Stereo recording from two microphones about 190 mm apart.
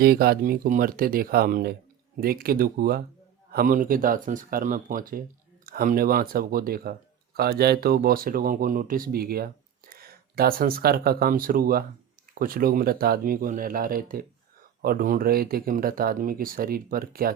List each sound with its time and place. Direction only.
0.0 s speech: 55° right (ahead or behind)